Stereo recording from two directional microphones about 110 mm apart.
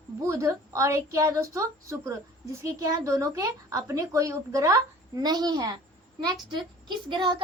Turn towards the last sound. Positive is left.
turn(degrees=-45)  # may be behind; listen again after turning